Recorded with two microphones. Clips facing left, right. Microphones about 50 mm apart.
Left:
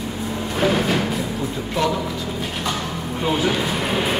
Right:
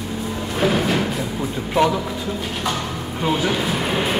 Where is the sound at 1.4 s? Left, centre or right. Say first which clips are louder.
Right 6 dB; centre.